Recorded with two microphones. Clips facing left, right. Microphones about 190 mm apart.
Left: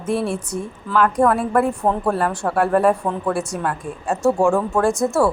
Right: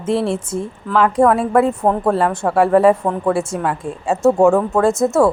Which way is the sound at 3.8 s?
20° right (ahead or behind).